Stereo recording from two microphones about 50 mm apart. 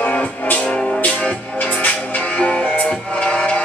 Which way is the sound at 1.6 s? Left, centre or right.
Left.